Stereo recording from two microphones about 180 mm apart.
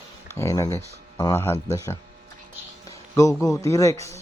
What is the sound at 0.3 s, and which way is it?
Speech, 15° left (ahead or behind).